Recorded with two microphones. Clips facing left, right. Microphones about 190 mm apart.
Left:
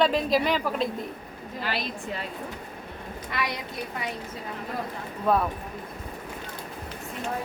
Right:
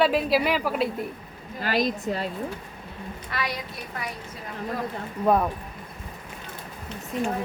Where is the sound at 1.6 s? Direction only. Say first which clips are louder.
Right 8 dB; 45° right (ahead or behind).